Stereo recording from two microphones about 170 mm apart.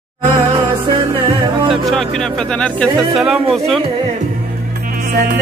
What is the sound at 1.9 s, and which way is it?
Speech, 5° left (ahead or behind).